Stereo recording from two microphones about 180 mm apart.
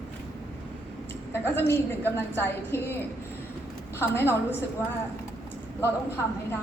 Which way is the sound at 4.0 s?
10° left (ahead or behind).